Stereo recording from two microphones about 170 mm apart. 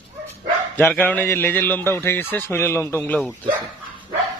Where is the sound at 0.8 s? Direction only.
10° left (ahead or behind).